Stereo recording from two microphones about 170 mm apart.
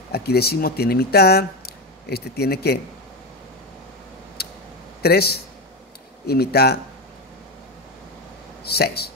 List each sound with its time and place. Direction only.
0.1 s speech: 70° left (ahead or behind)
4.4 s a sound: 70° left (ahead or behind)
5.0 s speech: 65° left (ahead or behind)
8.7 s speech: 65° left (ahead or behind)